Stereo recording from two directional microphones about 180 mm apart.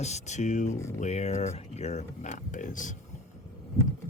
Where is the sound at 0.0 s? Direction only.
40° left (ahead or behind).